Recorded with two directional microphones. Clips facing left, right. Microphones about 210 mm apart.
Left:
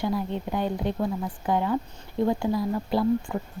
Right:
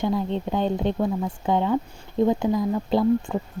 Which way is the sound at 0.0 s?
25° right (ahead or behind).